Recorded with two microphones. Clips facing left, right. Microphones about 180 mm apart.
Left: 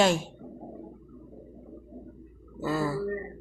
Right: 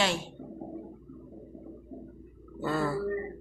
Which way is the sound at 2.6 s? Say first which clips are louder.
Left 1 dB; centre (ahead or behind).